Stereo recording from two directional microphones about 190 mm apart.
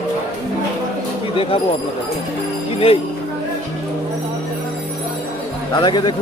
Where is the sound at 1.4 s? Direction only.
30° left (ahead or behind).